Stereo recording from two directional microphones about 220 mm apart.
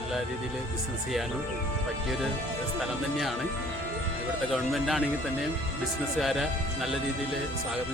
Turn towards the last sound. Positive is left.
turn(degrees=0)  # may be behind; listen again after turning